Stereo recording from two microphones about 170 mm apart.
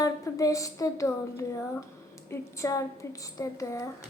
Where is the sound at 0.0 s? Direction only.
20° left (ahead or behind).